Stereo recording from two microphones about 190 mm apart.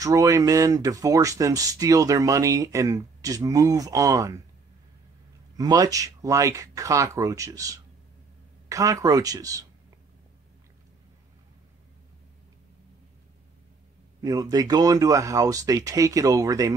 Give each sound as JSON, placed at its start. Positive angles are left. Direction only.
{"t": 0.0, "sound": "speech", "side_deg": -20}
{"t": 5.6, "sound": "speech", "side_deg": -20}
{"t": 14.2, "sound": "speech", "side_deg": -20}